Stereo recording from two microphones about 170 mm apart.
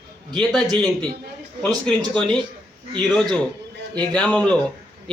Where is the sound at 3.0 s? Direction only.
5° left (ahead or behind).